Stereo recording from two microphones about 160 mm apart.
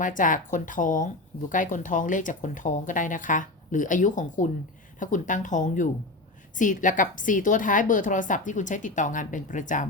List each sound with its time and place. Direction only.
0.0 s speech: 55° left (ahead or behind)